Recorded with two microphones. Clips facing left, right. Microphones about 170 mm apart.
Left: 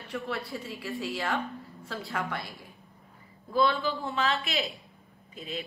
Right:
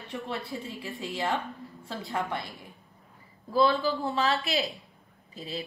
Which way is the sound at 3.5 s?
35° right (ahead or behind).